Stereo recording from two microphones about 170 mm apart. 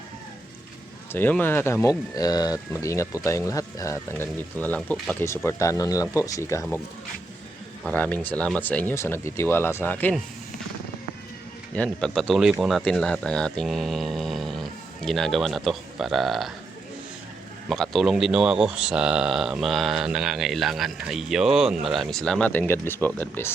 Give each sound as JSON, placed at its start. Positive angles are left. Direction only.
{"t": 1.1, "sound": "speech", "side_deg": 10}
{"t": 7.9, "sound": "speech", "side_deg": 10}
{"t": 11.7, "sound": "speech", "side_deg": 5}
{"t": 17.7, "sound": "speech", "side_deg": 0}